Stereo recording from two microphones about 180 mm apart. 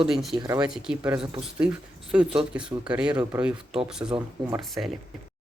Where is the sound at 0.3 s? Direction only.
20° right (ahead or behind).